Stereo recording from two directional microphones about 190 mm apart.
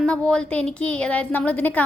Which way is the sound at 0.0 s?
5° left (ahead or behind).